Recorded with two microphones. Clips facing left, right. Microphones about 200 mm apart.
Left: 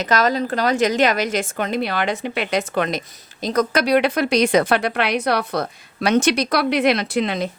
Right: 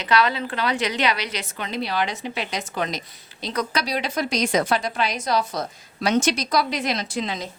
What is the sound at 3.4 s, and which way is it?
A woman's voice, 45° left (ahead or behind).